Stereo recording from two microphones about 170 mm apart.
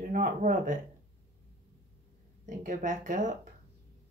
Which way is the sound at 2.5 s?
50° right (ahead or behind).